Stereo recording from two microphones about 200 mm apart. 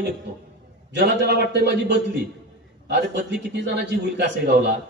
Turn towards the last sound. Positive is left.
turn(degrees=-55)  # may be behind; listen again after turning